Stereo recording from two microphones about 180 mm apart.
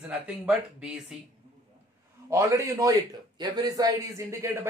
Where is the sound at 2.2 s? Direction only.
15° right (ahead or behind).